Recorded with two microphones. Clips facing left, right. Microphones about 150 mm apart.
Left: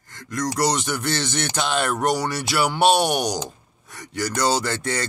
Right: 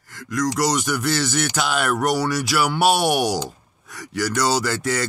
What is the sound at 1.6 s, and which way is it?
Speech, 5° right (ahead or behind).